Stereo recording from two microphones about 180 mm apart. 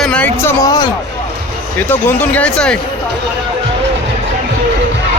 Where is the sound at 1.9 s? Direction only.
10° left (ahead or behind).